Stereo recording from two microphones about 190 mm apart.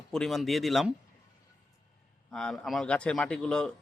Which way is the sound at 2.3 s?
Centre (ahead or behind).